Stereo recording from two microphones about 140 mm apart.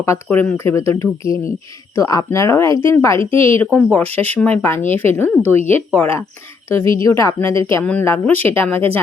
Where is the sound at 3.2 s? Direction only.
40° right (ahead or behind).